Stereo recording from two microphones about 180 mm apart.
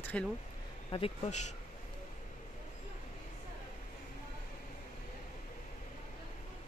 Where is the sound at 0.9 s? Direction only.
35° left (ahead or behind).